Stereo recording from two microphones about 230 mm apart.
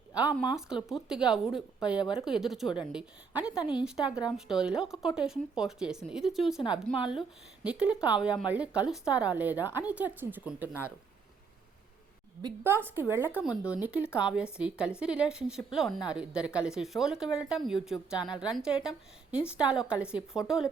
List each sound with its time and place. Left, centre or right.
0.3 s speech: centre
3.6 s a woman's voice: centre
3.8 s speech: centre
12.4 s a woman's voice: centre